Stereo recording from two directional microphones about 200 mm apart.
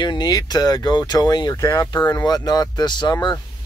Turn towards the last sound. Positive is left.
turn(degrees=20)  # may be behind; listen again after turning